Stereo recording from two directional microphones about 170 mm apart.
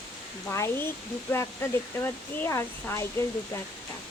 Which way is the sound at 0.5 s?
15° left (ahead or behind).